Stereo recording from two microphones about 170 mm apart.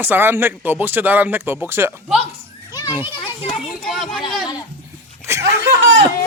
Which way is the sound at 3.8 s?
Centre (ahead or behind).